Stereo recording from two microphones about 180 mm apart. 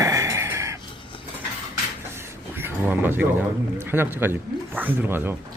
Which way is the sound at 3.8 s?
10° right (ahead or behind).